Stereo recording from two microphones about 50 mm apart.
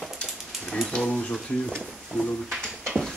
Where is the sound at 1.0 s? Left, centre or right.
Centre.